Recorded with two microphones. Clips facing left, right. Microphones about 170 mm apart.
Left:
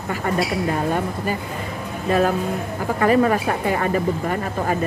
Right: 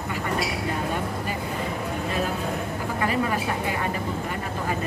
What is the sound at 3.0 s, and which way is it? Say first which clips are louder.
Speech: left 9 dB; 50° left (ahead or behind).